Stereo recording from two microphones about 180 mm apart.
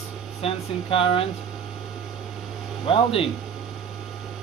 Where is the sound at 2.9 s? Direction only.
30° left (ahead or behind).